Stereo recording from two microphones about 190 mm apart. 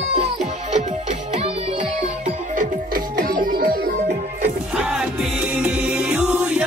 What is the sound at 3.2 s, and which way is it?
Music, 50° right (ahead or behind).